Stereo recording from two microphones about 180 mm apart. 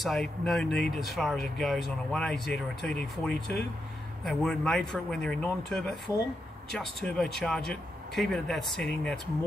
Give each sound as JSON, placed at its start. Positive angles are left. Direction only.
{"t": 0.0, "sound": "speech", "side_deg": 0}
{"t": 6.8, "sound": "speech", "side_deg": 0}